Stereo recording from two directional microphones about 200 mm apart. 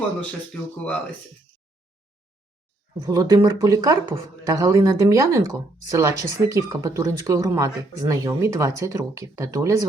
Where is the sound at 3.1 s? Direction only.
20° right (ahead or behind).